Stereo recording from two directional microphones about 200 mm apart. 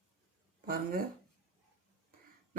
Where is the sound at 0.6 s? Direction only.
45° right (ahead or behind).